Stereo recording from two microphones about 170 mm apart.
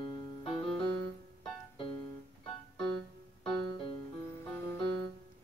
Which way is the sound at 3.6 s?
30° left (ahead or behind).